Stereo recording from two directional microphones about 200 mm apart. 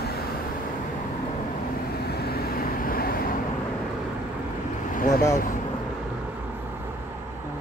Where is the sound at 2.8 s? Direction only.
45° left (ahead or behind).